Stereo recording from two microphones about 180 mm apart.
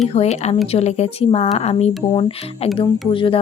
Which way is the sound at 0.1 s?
35° left (ahead or behind).